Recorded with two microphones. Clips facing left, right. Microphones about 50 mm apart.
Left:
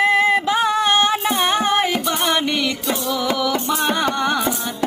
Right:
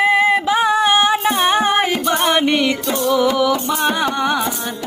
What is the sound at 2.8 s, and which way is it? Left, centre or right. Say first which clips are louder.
Music: right 3 dB; centre.